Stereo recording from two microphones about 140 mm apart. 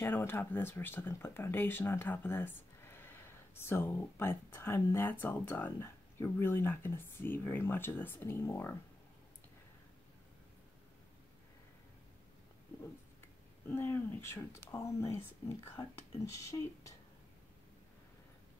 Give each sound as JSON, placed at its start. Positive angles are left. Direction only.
{"t": 0.0, "sound": "speech", "side_deg": 15}
{"t": 13.7, "sound": "speech", "side_deg": 15}